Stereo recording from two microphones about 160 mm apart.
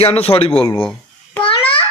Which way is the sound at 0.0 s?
35° left (ahead or behind).